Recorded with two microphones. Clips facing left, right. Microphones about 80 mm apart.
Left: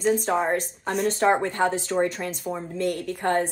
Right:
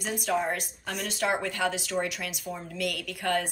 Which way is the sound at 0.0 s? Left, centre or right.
Left.